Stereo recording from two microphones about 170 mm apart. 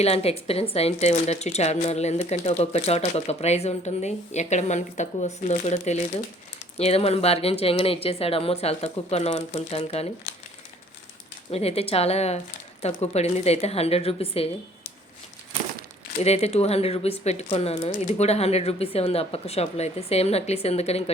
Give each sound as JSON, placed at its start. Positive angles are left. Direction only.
{"t": 0.0, "sound": "speech", "side_deg": 35}
{"t": 11.5, "sound": "speech", "side_deg": 35}
{"t": 16.1, "sound": "speech", "side_deg": 40}